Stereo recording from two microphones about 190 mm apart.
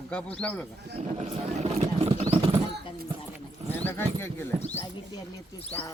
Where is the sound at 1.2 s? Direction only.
35° right (ahead or behind).